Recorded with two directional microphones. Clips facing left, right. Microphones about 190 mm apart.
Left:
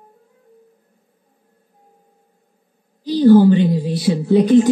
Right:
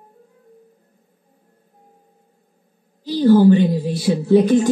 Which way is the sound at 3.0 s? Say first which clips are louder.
Left 3 dB; 15° left (ahead or behind).